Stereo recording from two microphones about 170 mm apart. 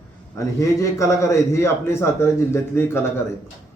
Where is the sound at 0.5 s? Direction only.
20° left (ahead or behind).